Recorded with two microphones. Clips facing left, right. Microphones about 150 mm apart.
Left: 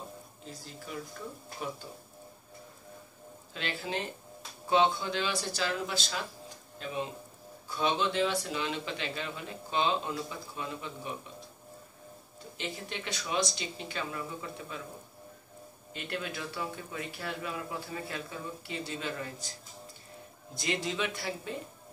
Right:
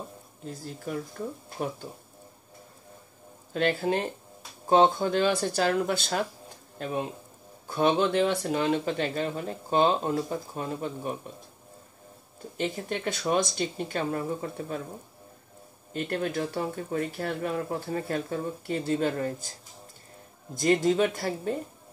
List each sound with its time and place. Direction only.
0.5 s speech: 50° right (ahead or behind)
3.5 s speech: 50° right (ahead or behind)
12.5 s speech: 50° right (ahead or behind)
15.9 s speech: 45° right (ahead or behind)
20.5 s speech: 45° right (ahead or behind)